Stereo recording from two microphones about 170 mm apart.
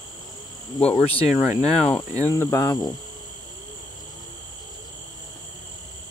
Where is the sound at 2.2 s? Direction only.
15° left (ahead or behind).